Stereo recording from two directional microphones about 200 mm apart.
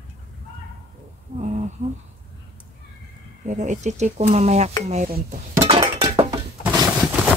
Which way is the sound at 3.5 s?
35° right (ahead or behind).